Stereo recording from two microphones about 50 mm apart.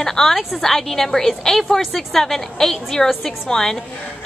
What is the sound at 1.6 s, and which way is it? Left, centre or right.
A woman's voice, centre.